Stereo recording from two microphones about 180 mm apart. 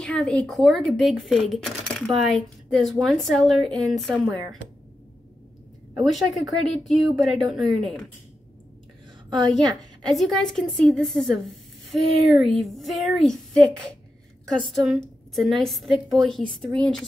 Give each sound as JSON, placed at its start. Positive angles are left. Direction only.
{"t": 0.0, "sound": "speech", "side_deg": 5}
{"t": 6.1, "sound": "speech", "side_deg": 0}
{"t": 9.3, "sound": "a woman's voice", "side_deg": -20}
{"t": 10.1, "sound": "speech", "side_deg": 0}
{"t": 14.7, "sound": "speech", "side_deg": 0}